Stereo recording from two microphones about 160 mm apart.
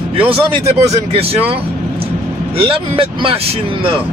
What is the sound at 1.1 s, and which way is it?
Speech, 35° right (ahead or behind).